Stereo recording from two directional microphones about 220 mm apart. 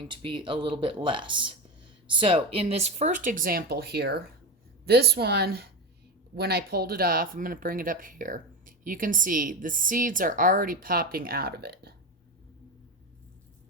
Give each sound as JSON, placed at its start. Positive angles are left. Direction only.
{"t": 0.0, "sound": "a woman's voice", "side_deg": -25}